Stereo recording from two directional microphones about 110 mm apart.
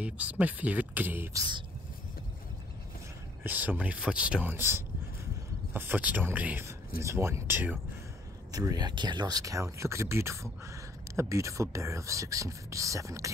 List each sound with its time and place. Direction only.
0.0 s speech: 10° right (ahead or behind)
3.4 s speech: 15° right (ahead or behind)
8.5 s speech: 30° right (ahead or behind)
9.4 s speech: 30° right (ahead or behind)